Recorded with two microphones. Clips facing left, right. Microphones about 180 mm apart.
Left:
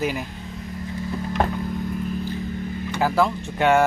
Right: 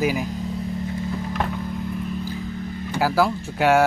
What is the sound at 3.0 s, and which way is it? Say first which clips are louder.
Speech: right 1 dB; 5° right (ahead or behind).